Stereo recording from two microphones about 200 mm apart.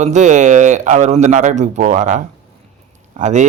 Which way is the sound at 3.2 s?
35° right (ahead or behind).